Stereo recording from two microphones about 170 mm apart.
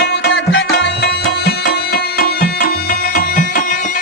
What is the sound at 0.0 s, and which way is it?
Music, 70° left (ahead or behind).